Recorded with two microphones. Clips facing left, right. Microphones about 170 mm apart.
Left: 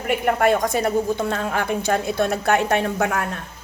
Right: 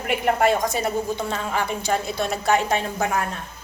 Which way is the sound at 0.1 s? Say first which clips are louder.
Left 1 dB; 55° left (ahead or behind).